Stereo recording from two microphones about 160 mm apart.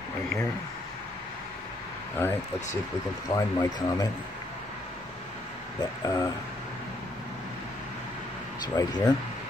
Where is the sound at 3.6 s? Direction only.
25° left (ahead or behind).